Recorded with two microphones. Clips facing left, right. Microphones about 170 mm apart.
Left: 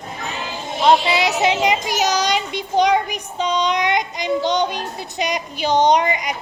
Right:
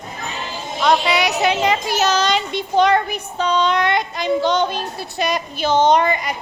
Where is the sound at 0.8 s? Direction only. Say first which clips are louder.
Left 1 dB; 25° left (ahead or behind).